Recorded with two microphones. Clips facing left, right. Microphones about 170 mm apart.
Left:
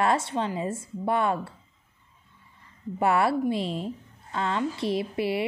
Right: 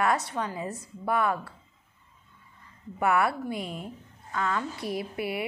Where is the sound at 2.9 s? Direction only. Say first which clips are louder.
Left 2 dB; 30° left (ahead or behind).